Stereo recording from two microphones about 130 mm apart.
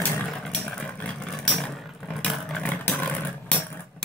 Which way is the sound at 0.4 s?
10° left (ahead or behind).